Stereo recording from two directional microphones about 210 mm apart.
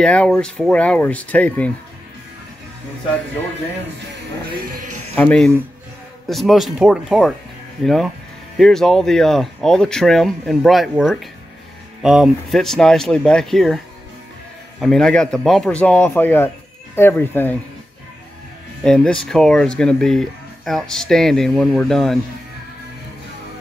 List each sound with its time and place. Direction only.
0.0 s speech: 5° left (ahead or behind)
4.7 s music: 90° right
5.1 s speech: 5° left (ahead or behind)
14.8 s speech: centre (ahead or behind)
18.8 s speech: 5° left (ahead or behind)